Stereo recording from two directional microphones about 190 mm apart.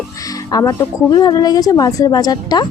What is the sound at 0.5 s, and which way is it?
A woman's voice, 20° left (ahead or behind).